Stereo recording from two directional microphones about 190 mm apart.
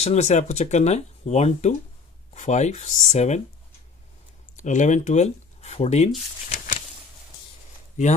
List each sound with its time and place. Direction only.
0.0 s speech: 35° left (ahead or behind)
4.6 s speech: 40° left (ahead or behind)